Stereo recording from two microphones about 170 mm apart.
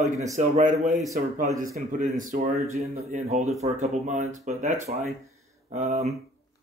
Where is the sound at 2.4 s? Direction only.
40° right (ahead or behind).